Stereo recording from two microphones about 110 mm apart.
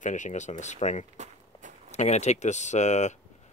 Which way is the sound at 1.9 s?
90° left.